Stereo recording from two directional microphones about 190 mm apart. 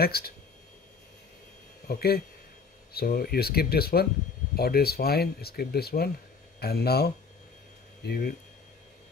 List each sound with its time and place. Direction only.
0.0 s speech: 55° left (ahead or behind)
1.9 s speech: 55° left (ahead or behind)